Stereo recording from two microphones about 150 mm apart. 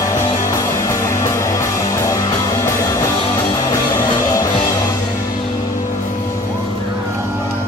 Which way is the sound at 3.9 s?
20° left (ahead or behind).